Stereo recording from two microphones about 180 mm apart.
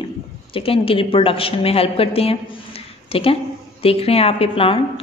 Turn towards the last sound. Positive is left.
turn(degrees=30)  # may be behind; listen again after turning